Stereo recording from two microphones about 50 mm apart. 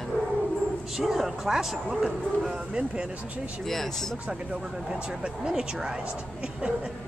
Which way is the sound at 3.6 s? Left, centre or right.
Centre.